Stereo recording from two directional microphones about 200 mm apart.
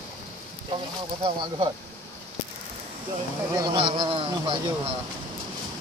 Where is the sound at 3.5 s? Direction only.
25° right (ahead or behind).